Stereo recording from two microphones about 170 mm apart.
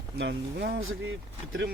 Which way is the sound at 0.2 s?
90° right.